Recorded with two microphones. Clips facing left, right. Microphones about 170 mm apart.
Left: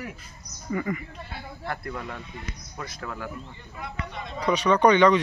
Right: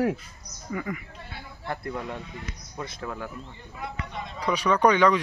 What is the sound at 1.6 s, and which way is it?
Speech, 20° right (ahead or behind).